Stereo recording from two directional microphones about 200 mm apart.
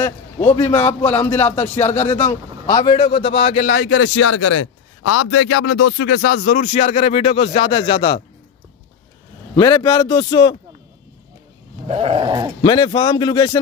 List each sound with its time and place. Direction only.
0.7 s speech: 30° left (ahead or behind)
1.2 s a man's voice: 10° left (ahead or behind); by 3.6 s 30° left (ahead or behind)
3.6 s speech: 90° left
5.2 s speech: 65° left (ahead or behind); by 8.2 s 25° left (ahead or behind)
9.6 s a man's voice: 20° left (ahead or behind)
11.9 s dog: 30° right (ahead or behind)
12.6 s a man's voice: 25° left (ahead or behind)